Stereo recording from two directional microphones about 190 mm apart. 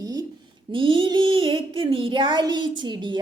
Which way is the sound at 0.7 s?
25° right (ahead or behind).